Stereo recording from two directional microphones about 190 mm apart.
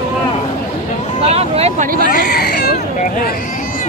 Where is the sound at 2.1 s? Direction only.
50° left (ahead or behind).